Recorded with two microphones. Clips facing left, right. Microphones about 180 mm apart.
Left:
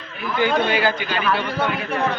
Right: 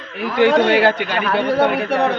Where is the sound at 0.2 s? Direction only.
75° right (ahead or behind).